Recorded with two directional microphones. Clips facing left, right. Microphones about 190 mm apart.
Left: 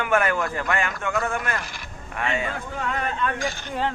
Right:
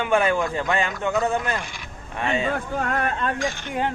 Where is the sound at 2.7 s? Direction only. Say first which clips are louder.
Right 1 dB; 55° right (ahead or behind).